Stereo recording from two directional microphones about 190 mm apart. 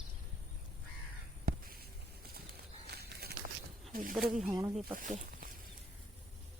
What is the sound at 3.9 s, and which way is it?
Snake, 45° right (ahead or behind).